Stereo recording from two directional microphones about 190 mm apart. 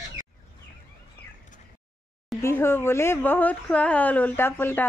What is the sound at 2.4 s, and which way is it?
Speech, 15° left (ahead or behind).